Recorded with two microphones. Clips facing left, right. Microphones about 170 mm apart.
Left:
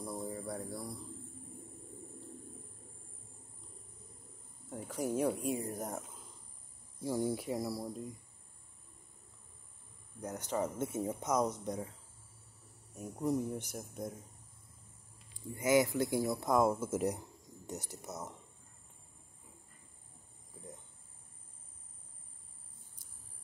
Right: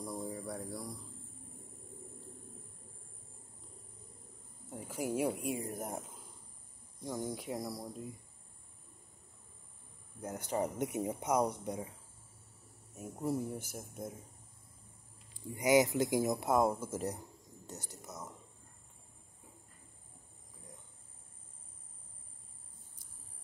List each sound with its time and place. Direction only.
0.0 s a sound: 5° left (ahead or behind)
4.6 s speech: 5° right (ahead or behind)
7.0 s speech: 5° left (ahead or behind)
10.2 s speech: 10° right (ahead or behind)
12.9 s speech: 5° right (ahead or behind)
15.5 s speech: 20° right (ahead or behind)
16.5 s speech: 5° left (ahead or behind)
18.0 s a sound: 25° left (ahead or behind)